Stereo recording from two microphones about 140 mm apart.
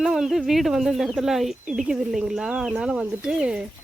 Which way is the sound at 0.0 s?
5° right (ahead or behind).